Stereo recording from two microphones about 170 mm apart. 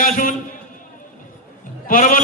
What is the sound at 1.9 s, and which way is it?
Speech, 50° left (ahead or behind).